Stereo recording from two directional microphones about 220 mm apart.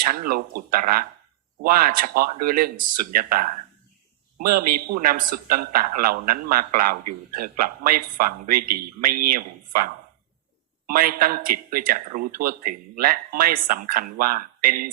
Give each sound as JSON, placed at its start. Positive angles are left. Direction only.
{"t": 0.0, "sound": "a man's voice", "side_deg": -40}